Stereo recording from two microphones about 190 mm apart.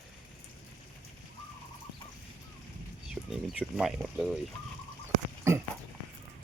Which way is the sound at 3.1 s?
Centre (ahead or behind).